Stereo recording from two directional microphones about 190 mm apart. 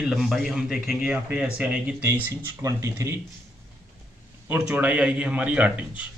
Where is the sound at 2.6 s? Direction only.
15° right (ahead or behind).